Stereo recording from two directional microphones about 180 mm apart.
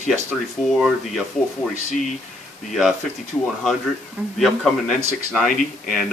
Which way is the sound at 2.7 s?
Centre (ahead or behind).